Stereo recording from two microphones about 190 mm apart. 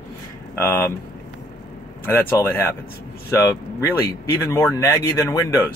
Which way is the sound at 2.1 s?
10° left (ahead or behind).